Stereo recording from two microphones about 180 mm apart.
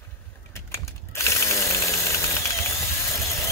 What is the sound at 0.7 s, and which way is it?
Chainsaw, 15° left (ahead or behind).